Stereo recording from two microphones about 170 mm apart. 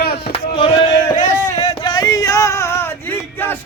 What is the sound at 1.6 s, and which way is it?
Male singing, 25° left (ahead or behind).